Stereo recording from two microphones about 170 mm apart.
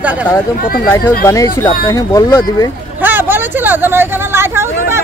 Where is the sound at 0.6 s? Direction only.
55° left (ahead or behind).